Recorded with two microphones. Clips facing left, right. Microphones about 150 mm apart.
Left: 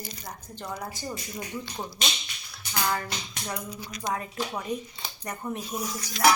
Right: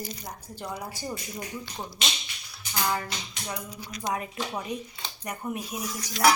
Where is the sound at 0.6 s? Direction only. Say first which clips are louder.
Even; 5° right (ahead or behind).